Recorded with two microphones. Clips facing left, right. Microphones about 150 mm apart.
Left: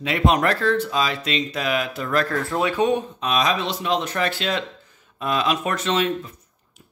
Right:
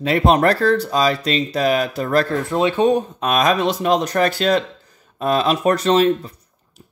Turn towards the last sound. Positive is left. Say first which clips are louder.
# right 7 dB
turn(degrees=-35)  # may be behind; listen again after turning